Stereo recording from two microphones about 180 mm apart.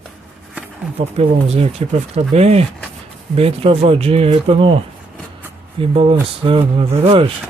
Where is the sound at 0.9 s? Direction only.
35° right (ahead or behind).